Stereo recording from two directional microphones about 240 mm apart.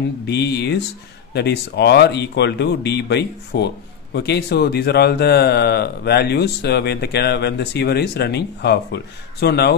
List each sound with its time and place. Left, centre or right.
0.3 s a man's voice: left